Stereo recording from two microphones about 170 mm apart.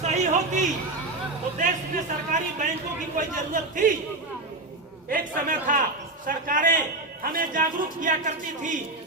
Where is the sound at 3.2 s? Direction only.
50° right (ahead or behind).